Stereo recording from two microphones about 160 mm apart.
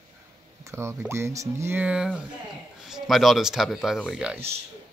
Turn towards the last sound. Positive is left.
turn(degrees=-10)  # may be behind; listen again after turning